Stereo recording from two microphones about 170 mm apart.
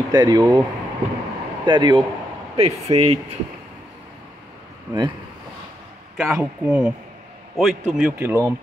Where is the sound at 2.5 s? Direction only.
35° right (ahead or behind).